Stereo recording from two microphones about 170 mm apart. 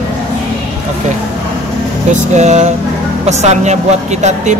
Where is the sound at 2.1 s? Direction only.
45° right (ahead or behind).